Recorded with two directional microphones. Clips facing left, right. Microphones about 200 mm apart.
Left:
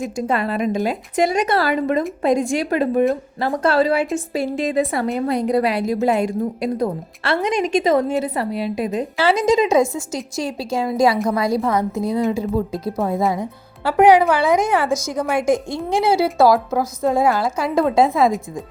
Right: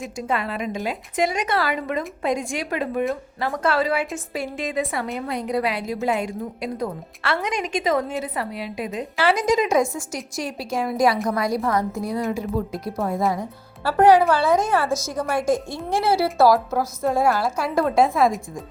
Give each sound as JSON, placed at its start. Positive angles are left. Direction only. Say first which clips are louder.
{"t": 0.2, "sound": "a woman's voice", "louder": "left 5 dB", "side_deg": 40}
{"t": 9.3, "sound": "a woman's voice", "louder": "left 4 dB", "side_deg": 25}